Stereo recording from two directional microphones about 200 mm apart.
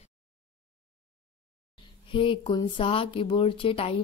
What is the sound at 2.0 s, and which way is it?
Speech, 25° left (ahead or behind).